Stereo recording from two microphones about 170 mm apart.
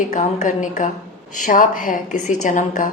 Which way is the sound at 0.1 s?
45° left (ahead or behind).